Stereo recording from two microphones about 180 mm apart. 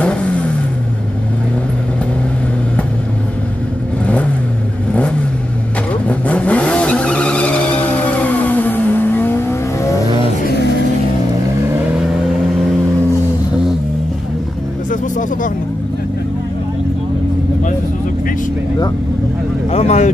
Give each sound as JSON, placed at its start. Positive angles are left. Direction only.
{"t": 0.0, "sound": "vehicle", "side_deg": 5}
{"t": 4.0, "sound": "vehicle", "side_deg": 5}
{"t": 6.0, "sound": "vehicle", "side_deg": 10}
{"t": 14.9, "sound": "vehicle", "side_deg": 45}
{"t": 19.7, "sound": "vehicle", "side_deg": 40}